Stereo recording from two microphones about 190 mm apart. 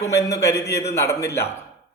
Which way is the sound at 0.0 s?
15° left (ahead or behind).